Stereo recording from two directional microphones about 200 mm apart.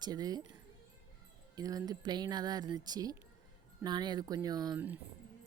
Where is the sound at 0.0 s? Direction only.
20° right (ahead or behind).